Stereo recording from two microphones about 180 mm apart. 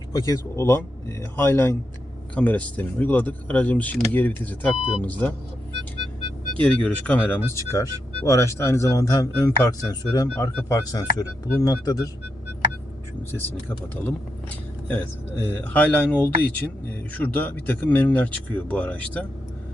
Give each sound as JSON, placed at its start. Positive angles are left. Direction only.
{"t": 0.5, "sound": "speech", "side_deg": 15}
{"t": 6.6, "sound": "speech", "side_deg": 10}
{"t": 13.3, "sound": "speech", "side_deg": 10}